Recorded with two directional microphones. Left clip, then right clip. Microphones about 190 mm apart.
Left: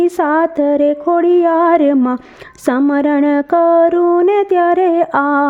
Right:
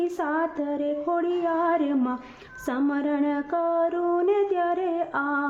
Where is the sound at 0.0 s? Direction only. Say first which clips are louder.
Left 13 dB; 50° left (ahead or behind).